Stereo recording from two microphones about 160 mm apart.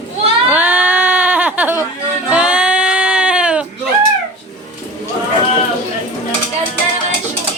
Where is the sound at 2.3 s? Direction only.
5° right (ahead or behind).